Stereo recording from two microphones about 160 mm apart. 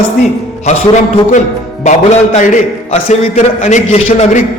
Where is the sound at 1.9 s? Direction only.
45° left (ahead or behind).